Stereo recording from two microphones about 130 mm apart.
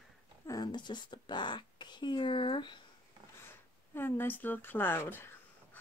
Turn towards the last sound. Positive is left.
turn(degrees=20)  # may be behind; listen again after turning